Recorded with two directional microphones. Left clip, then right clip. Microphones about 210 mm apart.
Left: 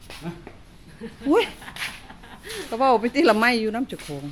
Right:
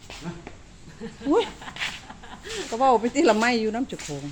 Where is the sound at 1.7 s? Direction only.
25° right (ahead or behind).